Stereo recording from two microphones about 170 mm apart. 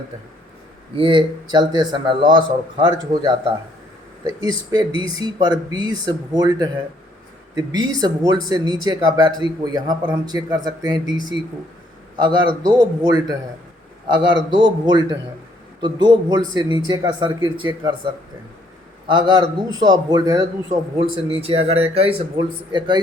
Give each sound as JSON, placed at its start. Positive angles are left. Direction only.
{"t": 0.9, "sound": "speech", "side_deg": -30}
{"t": 4.2, "sound": "speech", "side_deg": -20}
{"t": 21.0, "sound": "speech", "side_deg": -35}